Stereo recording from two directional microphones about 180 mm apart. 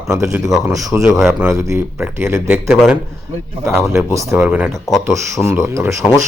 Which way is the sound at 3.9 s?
15° right (ahead or behind).